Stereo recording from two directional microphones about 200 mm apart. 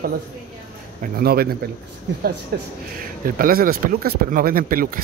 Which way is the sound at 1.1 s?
50° right (ahead or behind).